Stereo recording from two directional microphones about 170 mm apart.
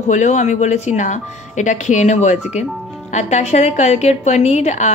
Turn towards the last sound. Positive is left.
turn(degrees=40)  # may be behind; listen again after turning